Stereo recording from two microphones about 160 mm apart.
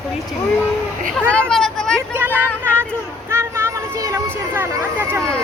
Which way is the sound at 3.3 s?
15° right (ahead or behind).